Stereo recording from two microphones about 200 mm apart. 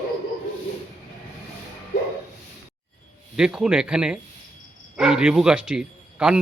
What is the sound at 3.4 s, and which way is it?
Speech, 5° right (ahead or behind).